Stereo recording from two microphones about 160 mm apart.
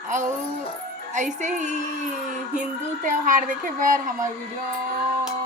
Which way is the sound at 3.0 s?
55° right (ahead or behind).